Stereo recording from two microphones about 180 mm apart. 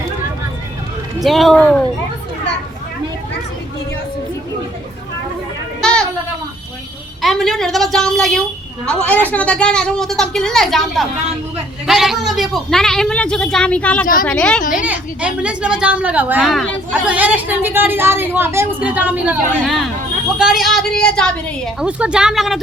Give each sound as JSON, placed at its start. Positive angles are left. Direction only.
{"t": 1.2, "sound": "a woman's voice", "side_deg": 0}
{"t": 5.8, "sound": "a sound", "side_deg": 5}
{"t": 7.2, "sound": "a woman's voice", "side_deg": 0}
{"t": 14.6, "sound": "speech", "side_deg": 45}
{"t": 14.8, "sound": "a woman's voice", "side_deg": -10}
{"t": 21.8, "sound": "a woman's voice", "side_deg": -5}